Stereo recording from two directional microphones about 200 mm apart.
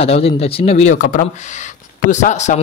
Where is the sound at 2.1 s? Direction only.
35° left (ahead or behind).